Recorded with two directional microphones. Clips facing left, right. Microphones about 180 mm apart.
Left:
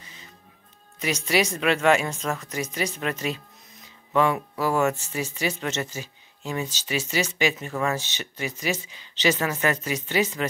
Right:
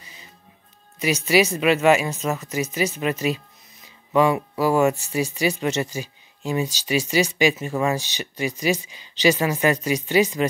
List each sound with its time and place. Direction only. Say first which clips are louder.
0.9 s speech: right 5 dB; 10° right (ahead or behind)